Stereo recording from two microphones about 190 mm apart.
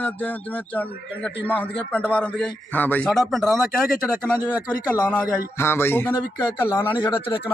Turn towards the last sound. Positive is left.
turn(degrees=10)  # may be behind; listen again after turning